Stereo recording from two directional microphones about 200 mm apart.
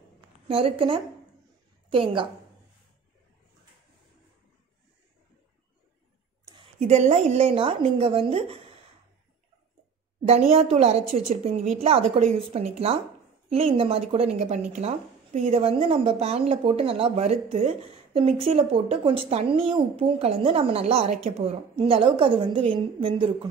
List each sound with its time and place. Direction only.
0.5 s speech: 30° right (ahead or behind)
6.4 s speech: 25° right (ahead or behind)
10.5 s a woman's voice: 30° right (ahead or behind)